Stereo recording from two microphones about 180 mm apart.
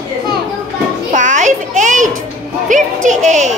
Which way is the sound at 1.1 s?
45° right (ahead or behind).